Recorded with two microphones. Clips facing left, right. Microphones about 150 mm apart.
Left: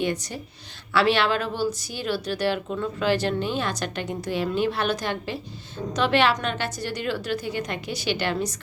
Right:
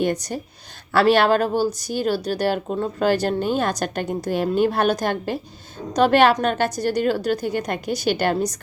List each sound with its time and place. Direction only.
0.0 s speech: 45° right (ahead or behind)